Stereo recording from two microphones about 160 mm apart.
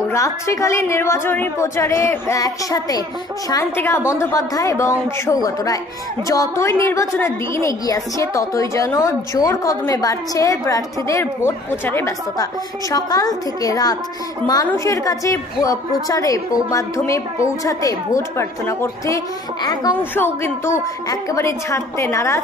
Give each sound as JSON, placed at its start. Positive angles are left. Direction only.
{"t": 0.1, "sound": "a woman's voice", "side_deg": 20}
{"t": 20.0, "sound": "a woman's voice", "side_deg": 15}